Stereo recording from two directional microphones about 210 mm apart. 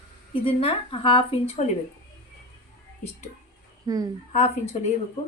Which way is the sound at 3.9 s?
15° right (ahead or behind).